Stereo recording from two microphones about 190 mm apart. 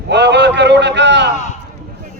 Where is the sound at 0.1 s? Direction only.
65° right (ahead or behind).